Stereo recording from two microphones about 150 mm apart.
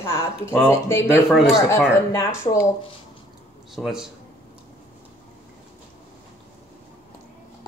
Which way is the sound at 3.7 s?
5° right (ahead or behind).